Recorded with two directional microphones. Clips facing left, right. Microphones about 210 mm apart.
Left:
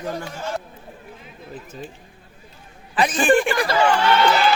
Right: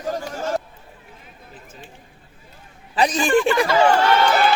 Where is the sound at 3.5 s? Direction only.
35° left (ahead or behind).